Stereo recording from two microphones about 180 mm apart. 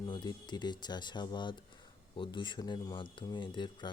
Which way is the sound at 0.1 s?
25° left (ahead or behind).